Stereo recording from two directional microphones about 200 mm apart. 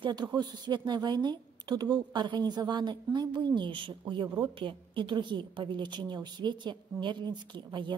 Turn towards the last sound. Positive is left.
turn(degrees=-20)  # may be behind; listen again after turning